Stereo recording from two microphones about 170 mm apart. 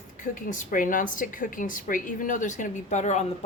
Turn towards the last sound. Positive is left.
turn(degrees=45)  # may be behind; listen again after turning